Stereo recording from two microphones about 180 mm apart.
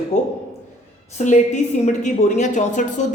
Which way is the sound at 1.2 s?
40° left (ahead or behind).